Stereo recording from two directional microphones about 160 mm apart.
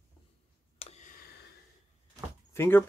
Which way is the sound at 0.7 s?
40° left (ahead or behind).